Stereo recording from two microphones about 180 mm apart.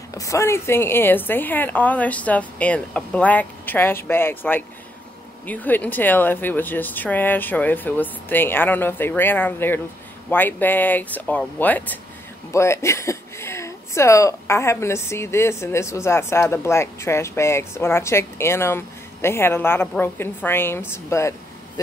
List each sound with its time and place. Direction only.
0.1 s speech: 15° left (ahead or behind)